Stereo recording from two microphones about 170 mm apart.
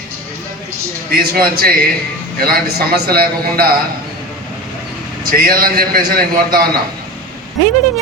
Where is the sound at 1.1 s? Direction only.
65° right (ahead or behind).